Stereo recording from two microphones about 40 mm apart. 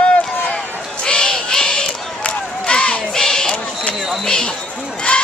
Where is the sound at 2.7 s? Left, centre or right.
Left.